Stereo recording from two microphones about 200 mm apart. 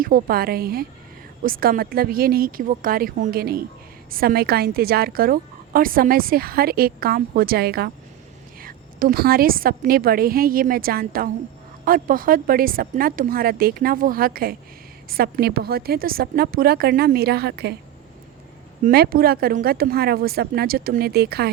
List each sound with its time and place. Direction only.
0.0 s a woman's voice: 45° right (ahead or behind)
18.8 s a woman's voice: 50° right (ahead or behind)